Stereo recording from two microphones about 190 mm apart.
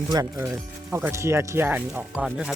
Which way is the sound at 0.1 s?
15° right (ahead or behind).